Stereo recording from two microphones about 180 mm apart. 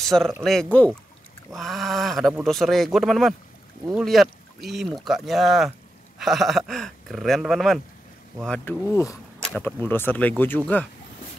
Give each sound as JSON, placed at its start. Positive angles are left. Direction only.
{"t": 0.0, "sound": "speech", "side_deg": 0}
{"t": 8.9, "sound": "speech", "side_deg": 15}
{"t": 9.4, "sound": "speech", "side_deg": 5}